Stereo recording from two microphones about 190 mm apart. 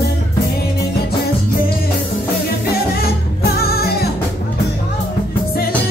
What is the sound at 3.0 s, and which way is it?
Music, 55° left (ahead or behind).